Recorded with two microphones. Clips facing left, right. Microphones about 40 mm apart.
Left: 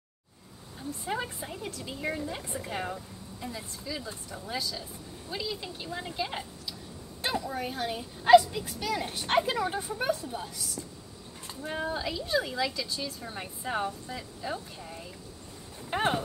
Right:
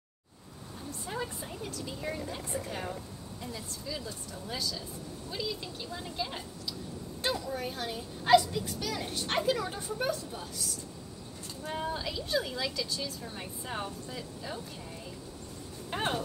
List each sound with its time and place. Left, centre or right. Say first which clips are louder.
1.0 s a woman's voice: left 3 dB; left
4.5 s a woman's voice: left 2 dB; centre
7.5 s a woman's voice: left 3 dB; centre
11.6 s a woman's voice: left 2 dB; left
15.9 s speech: left 4 dB; left